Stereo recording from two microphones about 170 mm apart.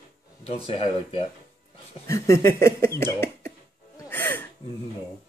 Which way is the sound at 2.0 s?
20° left (ahead or behind).